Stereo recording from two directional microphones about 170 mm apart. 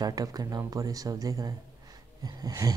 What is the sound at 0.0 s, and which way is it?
Speech, 20° right (ahead or behind).